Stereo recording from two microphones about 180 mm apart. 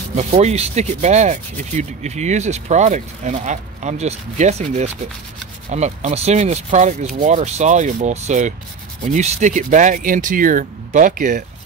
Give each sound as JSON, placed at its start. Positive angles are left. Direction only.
{"t": 0.1, "sound": "speech", "side_deg": -40}